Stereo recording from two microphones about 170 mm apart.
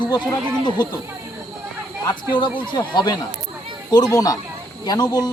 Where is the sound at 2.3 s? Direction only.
25° left (ahead or behind).